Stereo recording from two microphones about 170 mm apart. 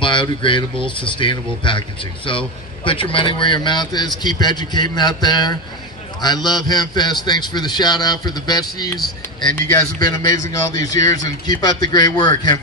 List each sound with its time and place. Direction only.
0.0 s a man's voice: 30° left (ahead or behind)
0.7 s speech: 5° left (ahead or behind)
1.1 s a man's voice: 30° left (ahead or behind)